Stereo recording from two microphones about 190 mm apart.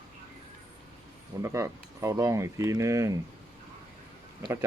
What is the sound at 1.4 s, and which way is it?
Speech, 15° right (ahead or behind).